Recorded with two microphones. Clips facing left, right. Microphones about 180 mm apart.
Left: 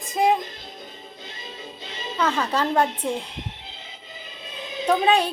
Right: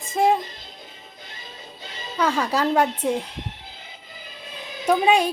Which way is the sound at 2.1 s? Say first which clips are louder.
Right 1 dB; 10° right (ahead or behind).